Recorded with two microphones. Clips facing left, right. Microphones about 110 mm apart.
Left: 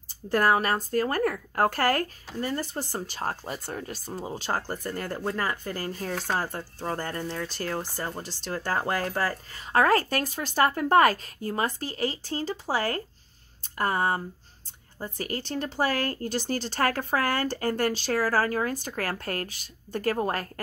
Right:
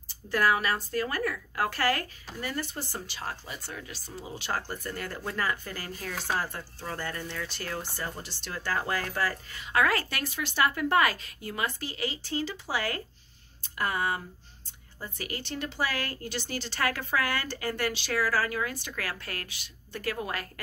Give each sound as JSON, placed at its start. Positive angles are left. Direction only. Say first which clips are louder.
{"t": 0.1, "sound": "a woman's voice", "louder": "left 3 dB", "side_deg": 45}